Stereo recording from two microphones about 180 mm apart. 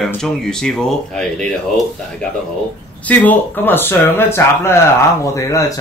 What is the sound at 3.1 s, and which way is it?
Speech, 10° left (ahead or behind).